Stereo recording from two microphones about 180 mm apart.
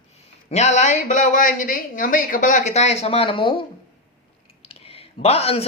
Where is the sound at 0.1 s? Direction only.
40° left (ahead or behind).